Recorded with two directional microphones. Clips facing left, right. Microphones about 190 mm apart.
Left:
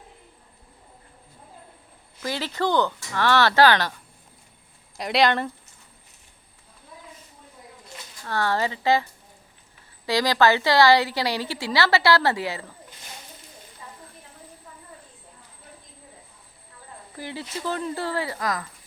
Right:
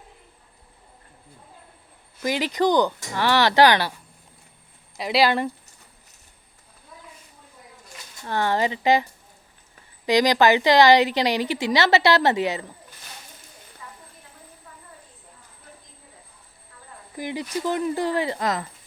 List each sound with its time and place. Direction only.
2.2 s speech: 15° right (ahead or behind)
4.9 s speech: centre (ahead or behind)
8.2 s speech: 20° right (ahead or behind)
10.1 s a woman's voice: 20° right (ahead or behind)
17.2 s speech: 15° right (ahead or behind)